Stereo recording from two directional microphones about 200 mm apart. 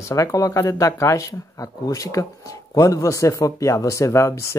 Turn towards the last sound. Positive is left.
turn(degrees=15)  # may be behind; listen again after turning